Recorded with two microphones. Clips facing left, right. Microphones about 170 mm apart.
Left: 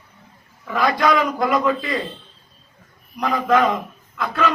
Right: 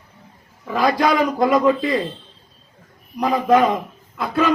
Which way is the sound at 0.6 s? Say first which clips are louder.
Right 1 dB; 30° right (ahead or behind).